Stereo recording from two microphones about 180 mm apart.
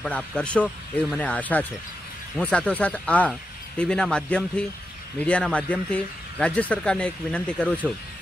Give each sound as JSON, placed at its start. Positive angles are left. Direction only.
{"t": 0.0, "sound": "speech", "side_deg": 5}